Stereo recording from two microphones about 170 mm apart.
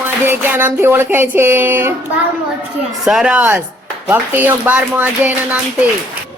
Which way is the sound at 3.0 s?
Centre (ahead or behind).